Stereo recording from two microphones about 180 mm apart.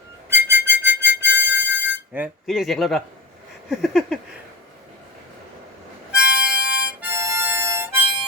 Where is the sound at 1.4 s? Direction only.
90° right.